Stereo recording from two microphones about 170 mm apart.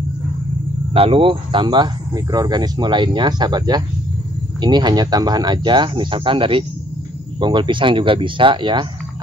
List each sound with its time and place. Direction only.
0.9 s speech: 35° right (ahead or behind)